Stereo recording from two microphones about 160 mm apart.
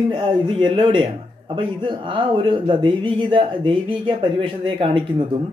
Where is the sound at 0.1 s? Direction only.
30° right (ahead or behind).